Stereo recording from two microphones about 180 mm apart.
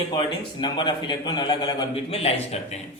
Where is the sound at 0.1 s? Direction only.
25° left (ahead or behind).